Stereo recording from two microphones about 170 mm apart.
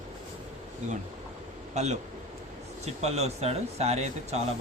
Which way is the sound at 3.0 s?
40° right (ahead or behind).